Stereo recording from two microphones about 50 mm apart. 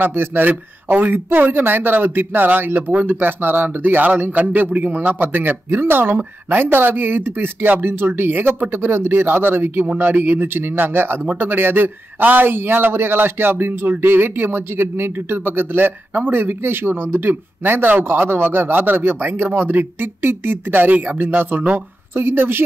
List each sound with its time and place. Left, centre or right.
0.0 s speech: right
22.1 s speech: right